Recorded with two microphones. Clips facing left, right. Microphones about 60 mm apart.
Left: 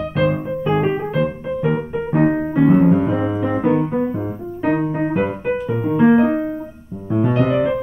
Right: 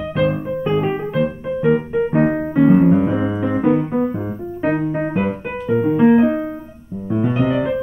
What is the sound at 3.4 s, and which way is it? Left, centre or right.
Keyboard, centre.